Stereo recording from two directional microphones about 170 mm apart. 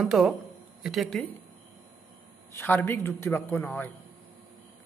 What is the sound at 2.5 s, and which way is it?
A man's voice, 10° left (ahead or behind).